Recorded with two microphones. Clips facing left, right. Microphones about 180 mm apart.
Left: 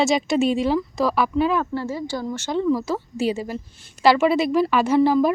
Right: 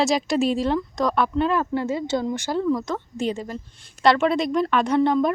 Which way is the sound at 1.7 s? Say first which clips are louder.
Right 3 dB; 20° right (ahead or behind).